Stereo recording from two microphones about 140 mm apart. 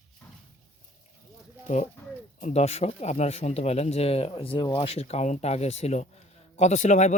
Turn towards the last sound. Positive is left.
turn(degrees=60)  # may be behind; listen again after turning